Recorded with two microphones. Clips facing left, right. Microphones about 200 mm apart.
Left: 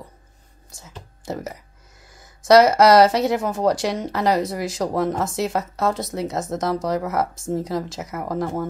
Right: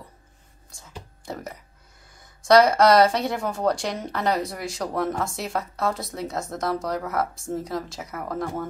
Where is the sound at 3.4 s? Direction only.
20° left (ahead or behind).